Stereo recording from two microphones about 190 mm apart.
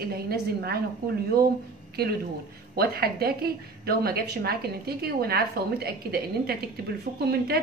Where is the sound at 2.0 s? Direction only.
60° right (ahead or behind).